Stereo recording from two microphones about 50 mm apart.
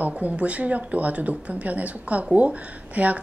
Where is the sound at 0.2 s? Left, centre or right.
Right.